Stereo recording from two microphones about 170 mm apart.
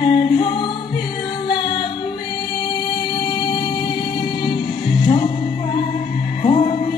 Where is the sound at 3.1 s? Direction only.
30° left (ahead or behind).